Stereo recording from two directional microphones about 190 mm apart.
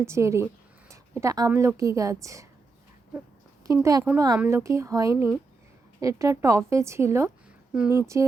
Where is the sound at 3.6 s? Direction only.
15° right (ahead or behind).